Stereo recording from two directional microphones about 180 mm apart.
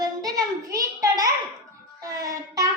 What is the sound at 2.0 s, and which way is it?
Child singing, 20° right (ahead or behind).